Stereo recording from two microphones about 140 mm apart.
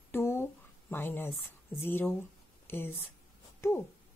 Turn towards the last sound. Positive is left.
turn(degrees=15)  # may be behind; listen again after turning